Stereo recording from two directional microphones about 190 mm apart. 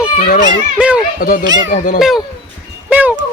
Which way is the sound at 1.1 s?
50° left (ahead or behind).